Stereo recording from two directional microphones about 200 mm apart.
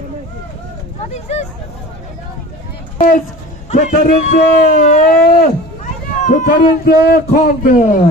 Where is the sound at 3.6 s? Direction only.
35° left (ahead or behind).